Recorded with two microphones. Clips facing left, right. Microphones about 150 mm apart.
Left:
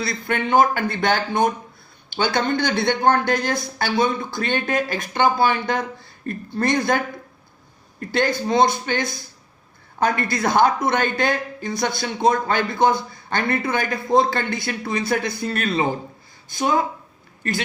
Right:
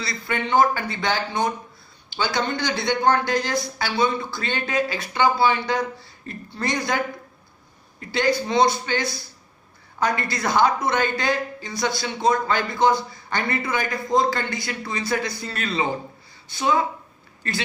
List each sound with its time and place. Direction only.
0.0 s a man's voice: 50° left (ahead or behind)